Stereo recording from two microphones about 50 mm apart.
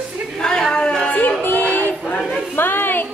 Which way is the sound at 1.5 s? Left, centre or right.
Left.